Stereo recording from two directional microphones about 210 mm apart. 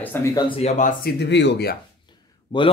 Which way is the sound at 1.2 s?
55° left (ahead or behind).